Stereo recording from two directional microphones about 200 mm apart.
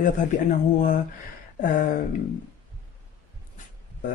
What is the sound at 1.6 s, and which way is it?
Speech, 45° left (ahead or behind).